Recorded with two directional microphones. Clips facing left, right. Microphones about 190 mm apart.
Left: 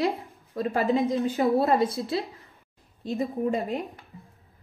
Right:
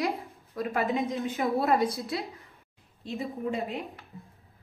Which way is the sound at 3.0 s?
40° left (ahead or behind).